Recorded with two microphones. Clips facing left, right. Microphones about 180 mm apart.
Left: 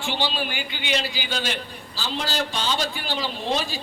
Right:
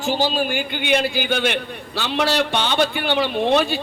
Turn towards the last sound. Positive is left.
turn(degrees=-60)  # may be behind; listen again after turning